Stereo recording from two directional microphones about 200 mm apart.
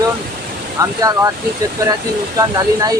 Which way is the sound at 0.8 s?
15° right (ahead or behind).